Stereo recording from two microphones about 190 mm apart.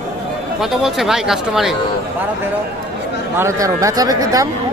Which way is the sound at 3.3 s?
15° right (ahead or behind).